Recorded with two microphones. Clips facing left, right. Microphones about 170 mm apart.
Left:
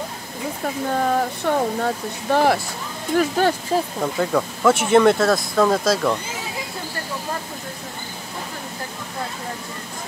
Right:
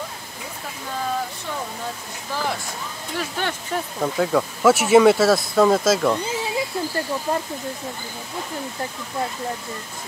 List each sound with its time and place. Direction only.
0.8 s speech: 55° left (ahead or behind)
3.2 s speech: 40° left (ahead or behind)
4.0 s speech: centre (ahead or behind)